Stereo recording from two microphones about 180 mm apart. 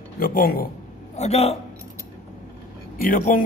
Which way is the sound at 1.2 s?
35° left (ahead or behind).